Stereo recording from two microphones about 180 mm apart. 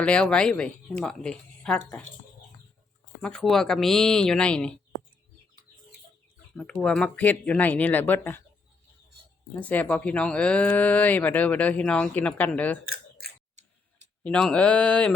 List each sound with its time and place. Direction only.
0.0 s speech: 5° left (ahead or behind)
3.2 s speech: 5° left (ahead or behind)
6.6 s speech: 5° left (ahead or behind)
9.6 s speech: 10° left (ahead or behind)
12.9 s a sound: 55° right (ahead or behind)
14.3 s speech: 5° left (ahead or behind)